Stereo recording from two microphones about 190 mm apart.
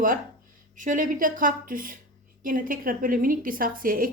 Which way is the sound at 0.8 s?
45° right (ahead or behind).